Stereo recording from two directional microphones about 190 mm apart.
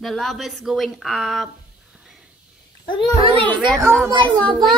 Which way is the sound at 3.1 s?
30° right (ahead or behind).